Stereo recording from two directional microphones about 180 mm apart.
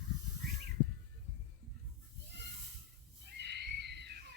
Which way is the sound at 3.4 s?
70° right (ahead or behind).